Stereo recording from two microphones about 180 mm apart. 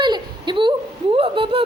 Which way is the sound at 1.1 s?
30° right (ahead or behind).